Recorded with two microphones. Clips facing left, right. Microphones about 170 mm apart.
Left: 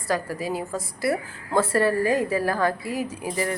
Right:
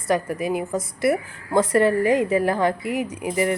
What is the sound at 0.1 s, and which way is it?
A woman's voice, 20° right (ahead or behind).